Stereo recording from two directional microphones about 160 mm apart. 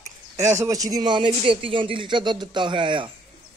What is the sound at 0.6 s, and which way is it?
Speech, 20° right (ahead or behind).